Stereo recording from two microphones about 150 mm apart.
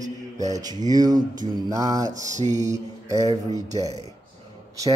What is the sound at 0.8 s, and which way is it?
Speech, 25° right (ahead or behind).